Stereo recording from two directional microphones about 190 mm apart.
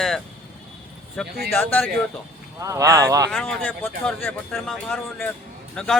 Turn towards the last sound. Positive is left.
turn(degrees=5)  # may be behind; listen again after turning